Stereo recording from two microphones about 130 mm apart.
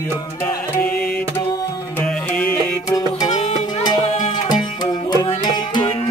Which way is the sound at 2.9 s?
30° left (ahead or behind).